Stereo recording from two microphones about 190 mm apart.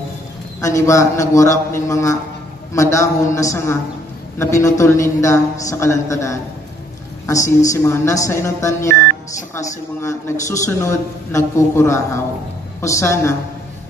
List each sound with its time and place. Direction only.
0.6 s a man's voice: 15° left (ahead or behind)
10.0 s a man's voice: 15° left (ahead or behind)